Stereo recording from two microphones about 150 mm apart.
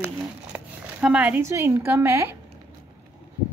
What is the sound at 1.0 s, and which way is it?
A woman's voice, 10° right (ahead or behind).